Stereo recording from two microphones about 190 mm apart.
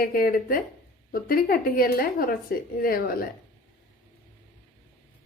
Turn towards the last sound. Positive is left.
turn(degrees=50)  # may be behind; listen again after turning